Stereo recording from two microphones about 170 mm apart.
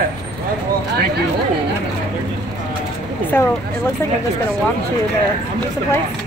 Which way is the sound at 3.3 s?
10° left (ahead or behind).